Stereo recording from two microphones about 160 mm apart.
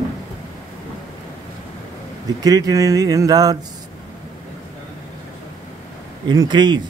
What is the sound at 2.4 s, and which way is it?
Speech, 20° right (ahead or behind).